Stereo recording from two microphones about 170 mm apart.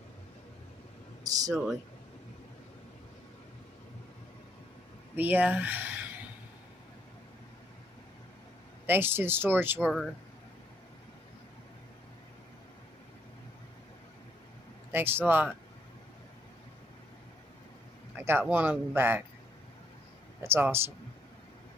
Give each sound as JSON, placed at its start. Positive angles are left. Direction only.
{"t": 1.2, "sound": "speech", "side_deg": -20}
{"t": 5.1, "sound": "a sound", "side_deg": -10}
{"t": 8.8, "sound": "speech", "side_deg": -15}
{"t": 14.9, "sound": "speech", "side_deg": -10}
{"t": 18.1, "sound": "a sound", "side_deg": -15}
{"t": 18.4, "sound": "speech", "side_deg": -10}
{"t": 20.4, "sound": "speech", "side_deg": -15}